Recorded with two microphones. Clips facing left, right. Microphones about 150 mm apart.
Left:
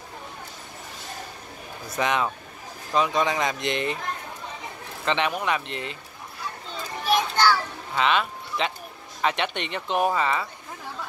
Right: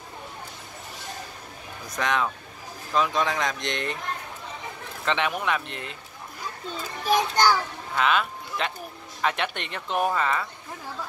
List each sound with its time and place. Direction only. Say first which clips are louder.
2.0 s speech: left 1 dB; 5° left (ahead or behind)
5.0 s speech: left 1 dB; centre (ahead or behind)
7.3 s a child's voice: even; 15° right (ahead or behind)
8.0 s speech: left 1 dB; centre (ahead or behind)